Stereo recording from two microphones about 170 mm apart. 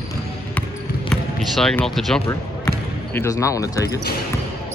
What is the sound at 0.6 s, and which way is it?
Basketball bounce, 5° left (ahead or behind).